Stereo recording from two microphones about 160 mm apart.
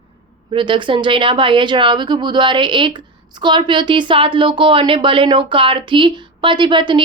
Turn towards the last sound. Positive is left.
turn(degrees=-30)  # may be behind; listen again after turning